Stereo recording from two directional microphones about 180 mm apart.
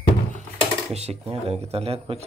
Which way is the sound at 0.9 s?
35° right (ahead or behind).